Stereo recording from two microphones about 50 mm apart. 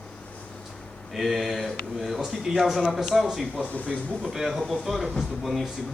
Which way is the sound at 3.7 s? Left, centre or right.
Left.